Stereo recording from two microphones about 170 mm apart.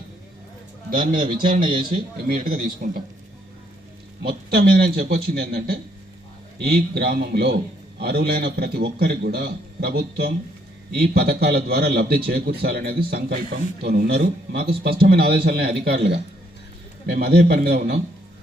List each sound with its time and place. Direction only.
0.9 s a man's voice: 55° right (ahead or behind)
1.6 s a man's voice: 30° right (ahead or behind)
1.9 s a man's voice: 60° right (ahead or behind)
4.3 s a man's voice: 65° right (ahead or behind)